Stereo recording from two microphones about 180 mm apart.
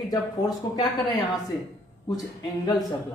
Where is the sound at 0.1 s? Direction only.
20° left (ahead or behind).